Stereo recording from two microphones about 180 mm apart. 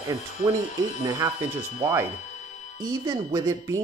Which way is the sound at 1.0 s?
20° right (ahead or behind).